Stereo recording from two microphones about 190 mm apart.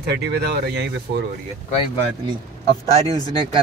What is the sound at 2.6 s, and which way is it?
Speech, 30° right (ahead or behind).